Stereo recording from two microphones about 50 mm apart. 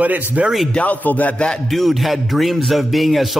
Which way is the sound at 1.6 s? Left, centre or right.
Centre.